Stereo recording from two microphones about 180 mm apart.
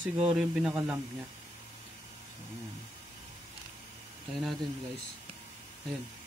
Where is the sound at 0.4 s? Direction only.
5° right (ahead or behind).